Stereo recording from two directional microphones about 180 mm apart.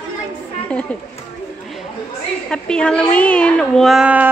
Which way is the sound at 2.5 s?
5° left (ahead or behind).